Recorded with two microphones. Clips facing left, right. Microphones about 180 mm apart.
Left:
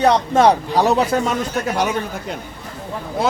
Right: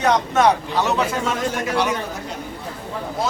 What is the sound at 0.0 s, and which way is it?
Speech, 30° left (ahead or behind).